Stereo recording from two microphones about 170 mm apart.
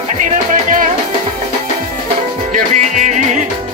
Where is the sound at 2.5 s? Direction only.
45° right (ahead or behind).